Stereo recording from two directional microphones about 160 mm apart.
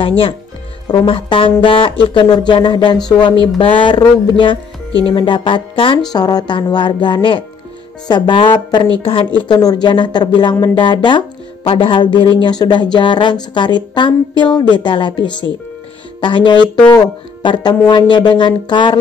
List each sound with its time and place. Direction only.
0.8 s a woman's voice: 35° left (ahead or behind)